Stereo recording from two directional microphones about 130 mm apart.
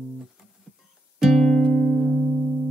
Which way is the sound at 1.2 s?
Centre (ahead or behind).